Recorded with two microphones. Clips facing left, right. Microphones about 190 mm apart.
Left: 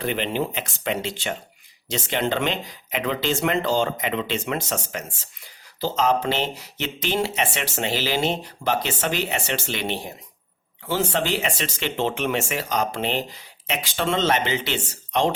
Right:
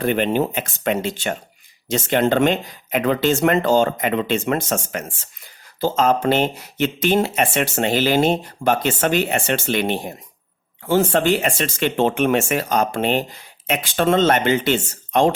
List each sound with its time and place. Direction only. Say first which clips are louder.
0.0 s speech: right 6 dB; 50° right (ahead or behind)